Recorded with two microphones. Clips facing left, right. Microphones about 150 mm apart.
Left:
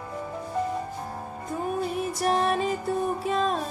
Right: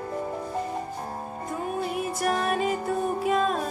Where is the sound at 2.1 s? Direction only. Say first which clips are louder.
Left 2 dB; 30° left (ahead or behind).